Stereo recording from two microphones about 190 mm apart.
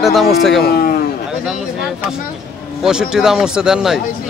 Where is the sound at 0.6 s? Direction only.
55° left (ahead or behind).